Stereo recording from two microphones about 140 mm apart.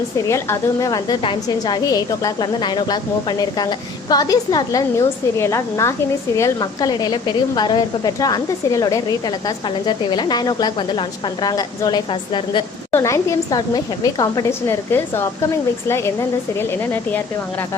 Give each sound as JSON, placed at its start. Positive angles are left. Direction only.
{"t": 0.3, "sound": "a woman's voice", "side_deg": 20}
{"t": 12.9, "sound": "a woman's voice", "side_deg": 20}